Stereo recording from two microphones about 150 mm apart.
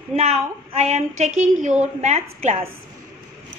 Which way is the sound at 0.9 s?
50° right (ahead or behind).